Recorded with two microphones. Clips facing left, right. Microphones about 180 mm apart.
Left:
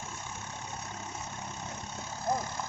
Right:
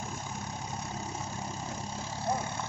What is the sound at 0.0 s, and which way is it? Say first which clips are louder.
Vehicle: right 4 dB; 35° right (ahead or behind).